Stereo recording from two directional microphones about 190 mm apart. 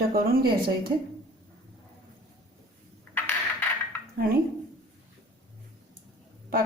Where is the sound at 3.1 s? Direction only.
10° left (ahead or behind).